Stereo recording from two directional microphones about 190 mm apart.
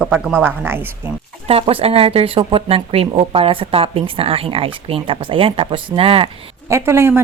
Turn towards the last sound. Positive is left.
turn(degrees=-10)  # may be behind; listen again after turning